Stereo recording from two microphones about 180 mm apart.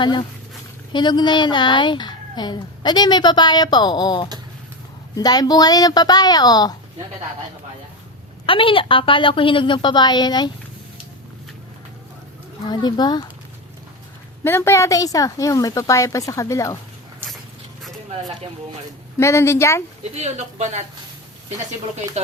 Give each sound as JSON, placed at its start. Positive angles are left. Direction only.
{"t": 0.0, "sound": "speech", "side_deg": 25}
{"t": 8.4, "sound": "speech", "side_deg": 30}
{"t": 12.6, "sound": "speech", "side_deg": 25}
{"t": 14.4, "sound": "speech", "side_deg": 15}
{"t": 19.1, "sound": "speech", "side_deg": 15}
{"t": 20.1, "sound": "speech", "side_deg": -40}